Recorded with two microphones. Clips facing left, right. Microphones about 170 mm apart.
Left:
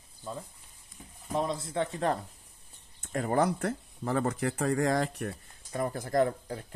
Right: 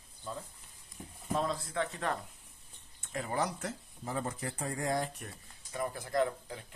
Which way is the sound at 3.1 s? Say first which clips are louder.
Left 7 dB; 50° left (ahead or behind).